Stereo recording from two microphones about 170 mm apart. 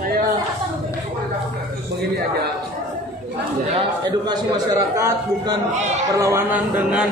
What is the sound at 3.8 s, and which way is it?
A man's voice, 25° right (ahead or behind).